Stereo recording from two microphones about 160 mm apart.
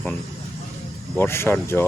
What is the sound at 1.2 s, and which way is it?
Speech, 15° left (ahead or behind).